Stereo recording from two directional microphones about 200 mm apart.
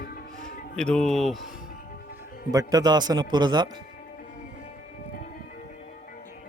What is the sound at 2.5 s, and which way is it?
Speech, 20° right (ahead or behind).